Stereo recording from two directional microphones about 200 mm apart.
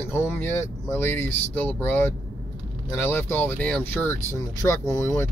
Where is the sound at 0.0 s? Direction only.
10° left (ahead or behind).